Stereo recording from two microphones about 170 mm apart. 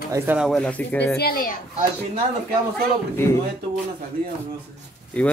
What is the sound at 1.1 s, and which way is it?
Speech, 60° left (ahead or behind).